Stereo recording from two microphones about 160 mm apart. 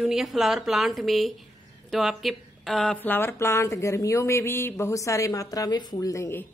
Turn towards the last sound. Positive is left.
turn(degrees=15)  # may be behind; listen again after turning